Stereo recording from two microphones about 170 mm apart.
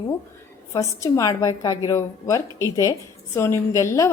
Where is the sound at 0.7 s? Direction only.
20° left (ahead or behind).